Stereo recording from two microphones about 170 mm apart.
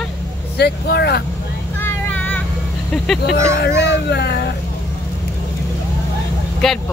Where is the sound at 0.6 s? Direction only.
70° left (ahead or behind).